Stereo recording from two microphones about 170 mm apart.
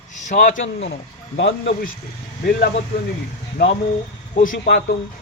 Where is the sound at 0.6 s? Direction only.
90° left.